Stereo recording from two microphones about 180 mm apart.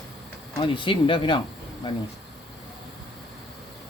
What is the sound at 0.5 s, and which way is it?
Speech, 30° left (ahead or behind).